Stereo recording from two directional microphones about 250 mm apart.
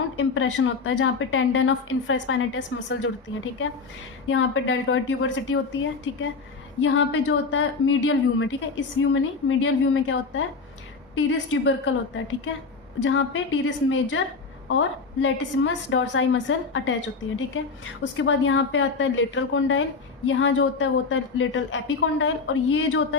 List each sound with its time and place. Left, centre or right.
0.2 s a woman's voice: left
4.3 s a woman's voice: left
18.2 s a woman's voice: left